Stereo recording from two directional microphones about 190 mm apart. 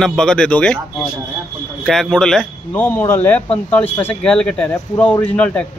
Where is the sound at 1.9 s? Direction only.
Centre (ahead or behind).